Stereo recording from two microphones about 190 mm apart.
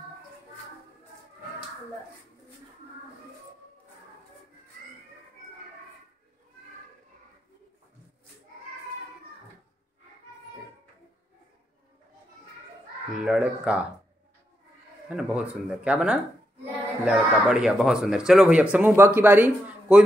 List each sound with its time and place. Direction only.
13.2 s speech: 5° right (ahead or behind)
15.0 s speech: 5° right (ahead or behind)